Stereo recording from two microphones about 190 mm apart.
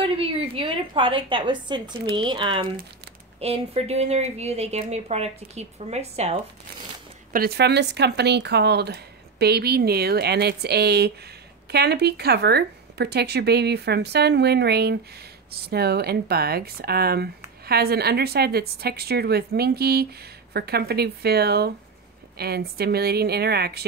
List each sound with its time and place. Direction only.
0.0 s a sound: 30° right (ahead or behind)
2.1 s speech: 25° right (ahead or behind)
7.3 s speech: 55° right (ahead or behind)